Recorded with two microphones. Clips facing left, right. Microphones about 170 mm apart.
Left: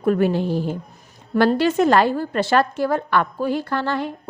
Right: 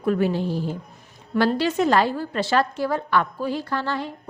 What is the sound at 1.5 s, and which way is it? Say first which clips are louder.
A woman's voice: left 4 dB; 50° left (ahead or behind).